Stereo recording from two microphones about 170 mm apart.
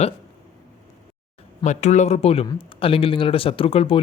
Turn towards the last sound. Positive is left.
turn(degrees=35)  # may be behind; listen again after turning